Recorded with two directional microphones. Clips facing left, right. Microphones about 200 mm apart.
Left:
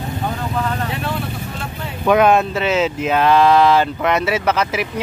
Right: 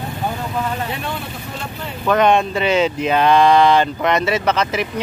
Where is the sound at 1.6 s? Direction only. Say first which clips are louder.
Even; 5° left (ahead or behind).